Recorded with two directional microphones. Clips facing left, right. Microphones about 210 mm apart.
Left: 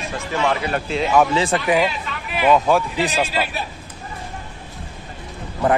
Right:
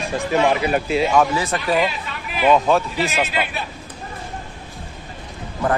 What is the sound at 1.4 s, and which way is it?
Speech, 25° left (ahead or behind).